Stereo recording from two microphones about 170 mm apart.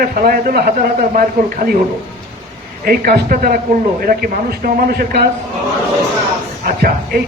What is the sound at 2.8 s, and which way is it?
A man's voice, 60° right (ahead or behind).